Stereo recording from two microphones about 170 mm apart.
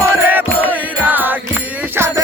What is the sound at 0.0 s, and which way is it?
Music, 15° right (ahead or behind).